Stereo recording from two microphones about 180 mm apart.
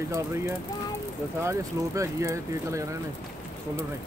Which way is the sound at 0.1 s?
15° right (ahead or behind).